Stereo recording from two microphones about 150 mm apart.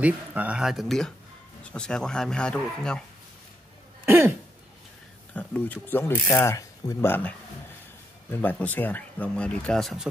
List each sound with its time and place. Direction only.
0.0 s speech: 10° right (ahead or behind)
4.0 s throat clearing: 15° right (ahead or behind)
5.3 s speech: 10° left (ahead or behind)